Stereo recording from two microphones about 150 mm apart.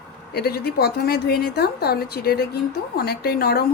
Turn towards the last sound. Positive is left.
turn(degrees=90)